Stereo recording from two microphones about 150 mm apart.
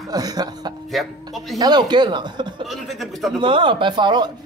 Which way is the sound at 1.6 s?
25° right (ahead or behind).